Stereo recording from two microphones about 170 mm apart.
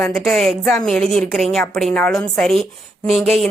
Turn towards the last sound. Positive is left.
turn(degrees=0)  # may be behind; listen again after turning